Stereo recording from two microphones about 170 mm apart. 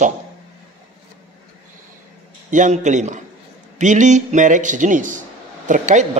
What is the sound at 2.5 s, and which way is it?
Speech, 45° right (ahead or behind).